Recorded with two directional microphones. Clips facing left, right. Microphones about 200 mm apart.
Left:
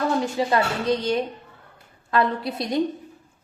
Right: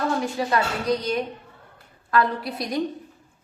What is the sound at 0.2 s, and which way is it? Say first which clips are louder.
A woman's voice: left 2 dB; 25° left (ahead or behind).